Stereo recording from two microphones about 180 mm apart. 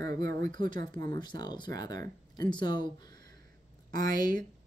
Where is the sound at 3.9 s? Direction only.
50° right (ahead or behind).